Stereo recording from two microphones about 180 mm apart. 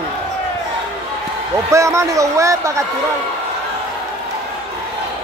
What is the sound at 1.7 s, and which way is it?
A man's voice, 15° right (ahead or behind).